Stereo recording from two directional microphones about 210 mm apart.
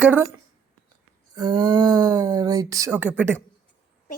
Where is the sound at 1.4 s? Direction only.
20° right (ahead or behind).